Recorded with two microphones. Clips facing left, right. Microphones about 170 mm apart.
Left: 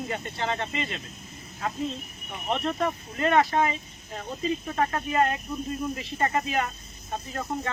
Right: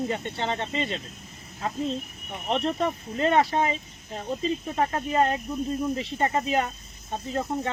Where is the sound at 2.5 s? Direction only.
30° right (ahead or behind).